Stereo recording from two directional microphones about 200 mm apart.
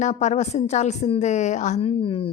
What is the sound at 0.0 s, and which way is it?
A woman's voice, 35° left (ahead or behind).